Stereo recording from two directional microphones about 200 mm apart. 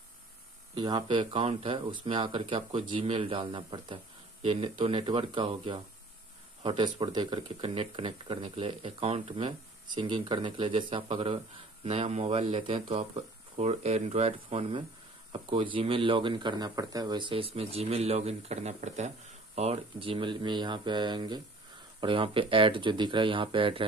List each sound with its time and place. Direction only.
0.7 s speech: 20° right (ahead or behind)